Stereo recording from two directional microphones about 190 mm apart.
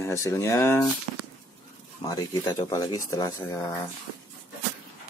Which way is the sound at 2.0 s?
20° left (ahead or behind).